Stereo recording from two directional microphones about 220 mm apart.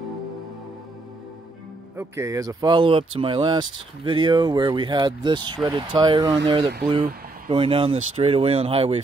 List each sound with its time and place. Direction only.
2.0 s speech: 15° right (ahead or behind)